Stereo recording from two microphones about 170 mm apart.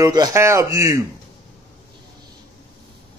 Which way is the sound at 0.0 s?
20° right (ahead or behind).